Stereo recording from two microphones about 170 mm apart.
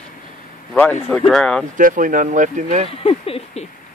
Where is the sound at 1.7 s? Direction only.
50° right (ahead or behind).